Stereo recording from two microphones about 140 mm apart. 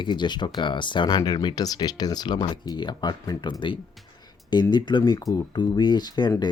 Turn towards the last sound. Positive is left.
turn(degrees=30)  # may be behind; listen again after turning